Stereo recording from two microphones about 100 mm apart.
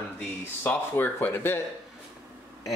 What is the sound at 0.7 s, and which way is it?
Speech, 20° left (ahead or behind).